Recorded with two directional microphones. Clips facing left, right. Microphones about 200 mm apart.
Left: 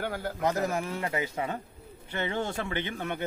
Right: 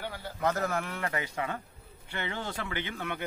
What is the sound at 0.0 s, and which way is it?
Speech, 50° left (ahead or behind).